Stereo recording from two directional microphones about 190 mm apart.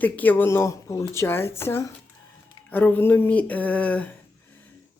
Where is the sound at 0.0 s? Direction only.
10° left (ahead or behind).